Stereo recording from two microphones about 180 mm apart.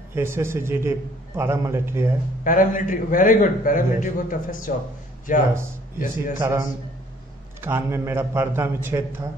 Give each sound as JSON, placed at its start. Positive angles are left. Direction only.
{"t": 0.1, "sound": "a man's voice", "side_deg": -15}
{"t": 2.4, "sound": "a man's voice", "side_deg": 50}
{"t": 6.4, "sound": "a man's voice", "side_deg": -15}